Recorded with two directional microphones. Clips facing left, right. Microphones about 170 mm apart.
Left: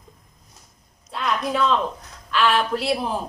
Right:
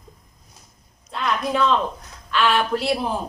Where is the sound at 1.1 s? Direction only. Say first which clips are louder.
Right 1 dB; centre (ahead or behind).